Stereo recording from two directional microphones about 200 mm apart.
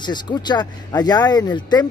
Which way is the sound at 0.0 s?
20° left (ahead or behind).